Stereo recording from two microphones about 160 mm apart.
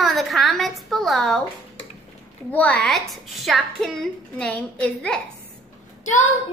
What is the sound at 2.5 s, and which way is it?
A woman's voice, 10° left (ahead or behind).